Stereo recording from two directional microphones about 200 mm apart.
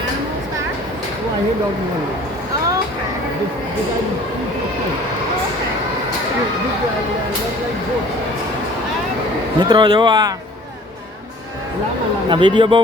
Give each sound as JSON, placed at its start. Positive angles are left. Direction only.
{"t": 9.6, "sound": "speech", "side_deg": -25}
{"t": 12.3, "sound": "speech", "side_deg": -25}